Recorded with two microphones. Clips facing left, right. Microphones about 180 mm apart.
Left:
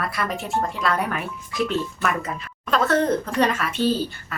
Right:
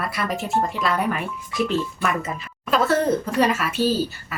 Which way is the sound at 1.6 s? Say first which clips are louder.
Right 1 dB; centre (ahead or behind).